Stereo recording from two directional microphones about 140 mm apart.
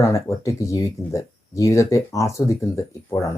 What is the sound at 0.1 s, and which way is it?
Speech, 20° left (ahead or behind).